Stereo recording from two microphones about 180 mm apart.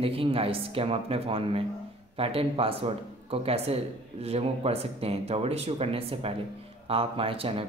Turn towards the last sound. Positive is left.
turn(degrees=-30)  # may be behind; listen again after turning